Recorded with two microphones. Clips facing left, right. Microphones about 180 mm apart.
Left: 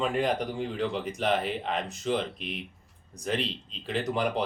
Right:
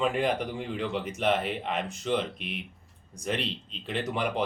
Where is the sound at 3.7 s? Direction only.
Centre (ahead or behind).